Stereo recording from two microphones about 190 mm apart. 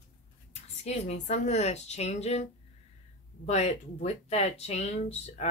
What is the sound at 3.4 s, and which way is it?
Speech, 35° left (ahead or behind).